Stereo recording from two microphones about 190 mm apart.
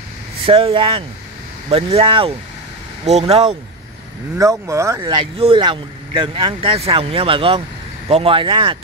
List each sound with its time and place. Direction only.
0.5 s speech: 30° right (ahead or behind)
4.4 s speech: 15° right (ahead or behind)